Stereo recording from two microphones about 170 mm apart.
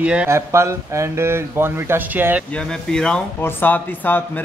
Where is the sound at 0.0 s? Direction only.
5° right (ahead or behind).